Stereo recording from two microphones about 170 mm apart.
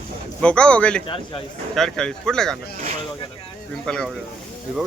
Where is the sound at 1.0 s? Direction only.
30° left (ahead or behind).